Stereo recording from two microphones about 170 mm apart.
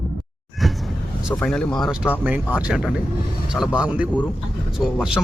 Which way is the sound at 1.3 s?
5° left (ahead or behind).